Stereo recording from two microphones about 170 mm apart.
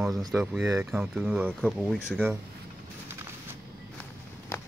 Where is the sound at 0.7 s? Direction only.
15° right (ahead or behind).